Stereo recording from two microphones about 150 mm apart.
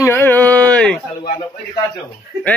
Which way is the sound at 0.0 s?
15° left (ahead or behind).